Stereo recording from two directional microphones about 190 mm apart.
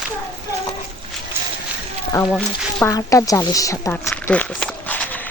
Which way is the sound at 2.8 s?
15° left (ahead or behind).